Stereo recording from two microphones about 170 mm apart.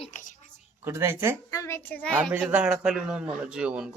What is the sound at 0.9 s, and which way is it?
Speech, 15° right (ahead or behind).